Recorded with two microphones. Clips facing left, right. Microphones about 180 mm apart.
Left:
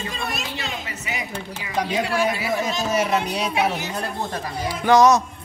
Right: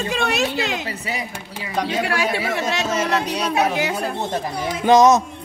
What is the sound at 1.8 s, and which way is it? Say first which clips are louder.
A woman's voice: left 1 dB; 70° right (ahead or behind).